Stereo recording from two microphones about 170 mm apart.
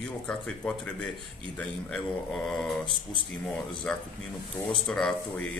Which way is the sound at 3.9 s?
5° left (ahead or behind).